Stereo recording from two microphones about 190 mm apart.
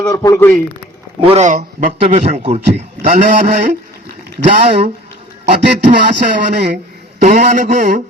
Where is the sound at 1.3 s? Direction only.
40° right (ahead or behind).